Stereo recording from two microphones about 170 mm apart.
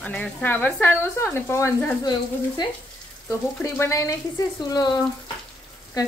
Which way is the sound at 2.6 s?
25° left (ahead or behind).